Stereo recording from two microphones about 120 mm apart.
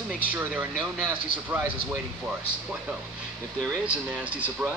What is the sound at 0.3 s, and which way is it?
Speech, 15° right (ahead or behind).